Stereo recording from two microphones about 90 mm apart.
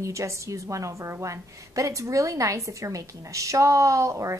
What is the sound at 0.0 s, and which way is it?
A woman's voice, 35° right (ahead or behind).